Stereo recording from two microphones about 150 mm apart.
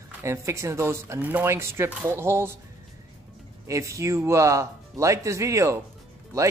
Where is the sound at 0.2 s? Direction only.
20° right (ahead or behind).